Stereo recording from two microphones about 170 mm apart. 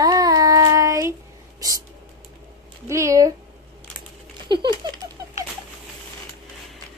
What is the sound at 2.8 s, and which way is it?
Speech, 15° right (ahead or behind).